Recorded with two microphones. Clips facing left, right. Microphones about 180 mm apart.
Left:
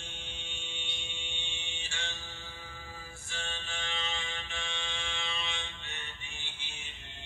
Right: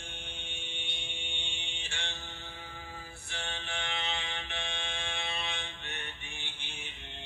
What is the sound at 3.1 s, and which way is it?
Fire alarm, 65° right (ahead or behind).